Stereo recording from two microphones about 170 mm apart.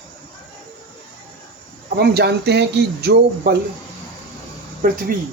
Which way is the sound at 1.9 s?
70° right (ahead or behind).